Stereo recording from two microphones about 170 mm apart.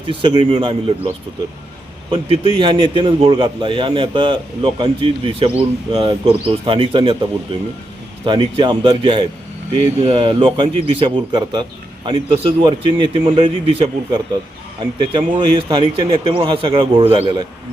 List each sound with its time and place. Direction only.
0.1 s a man's voice: 30° right (ahead or behind)
2.0 s a man's voice: 30° right (ahead or behind)